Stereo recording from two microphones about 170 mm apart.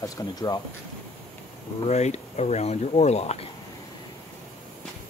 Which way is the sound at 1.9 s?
40° left (ahead or behind).